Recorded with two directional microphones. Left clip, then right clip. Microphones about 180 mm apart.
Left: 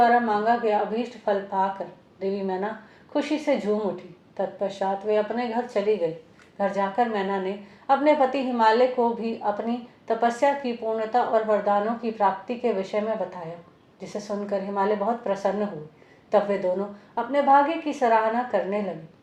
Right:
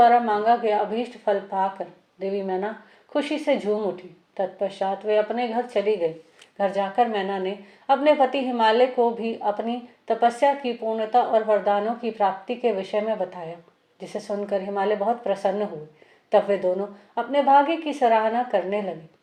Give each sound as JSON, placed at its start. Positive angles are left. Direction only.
{"t": 0.0, "sound": "a woman's voice", "side_deg": -25}